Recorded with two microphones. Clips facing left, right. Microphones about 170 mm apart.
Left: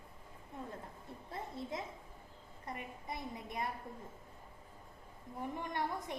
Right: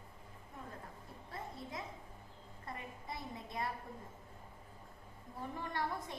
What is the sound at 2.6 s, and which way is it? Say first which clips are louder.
A woman's voice: left 2 dB; 20° left (ahead or behind).